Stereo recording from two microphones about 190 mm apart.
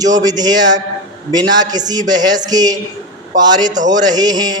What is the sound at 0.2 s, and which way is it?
A man's voice, 20° right (ahead or behind).